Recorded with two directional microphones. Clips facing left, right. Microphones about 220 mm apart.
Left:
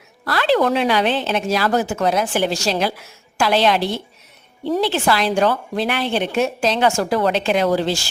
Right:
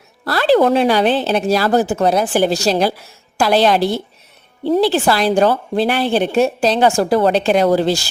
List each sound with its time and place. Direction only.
0.3 s a woman's voice: 35° right (ahead or behind)